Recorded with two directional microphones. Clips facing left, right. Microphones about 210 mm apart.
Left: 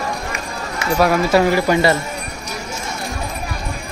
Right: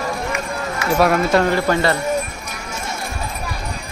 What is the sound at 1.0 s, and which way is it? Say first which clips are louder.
Speech: left 1 dB; 5° left (ahead or behind).